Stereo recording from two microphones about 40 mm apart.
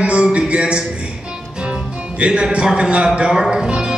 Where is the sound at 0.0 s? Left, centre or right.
Right.